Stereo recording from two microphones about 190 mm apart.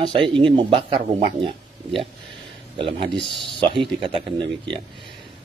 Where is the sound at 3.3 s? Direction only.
Centre (ahead or behind).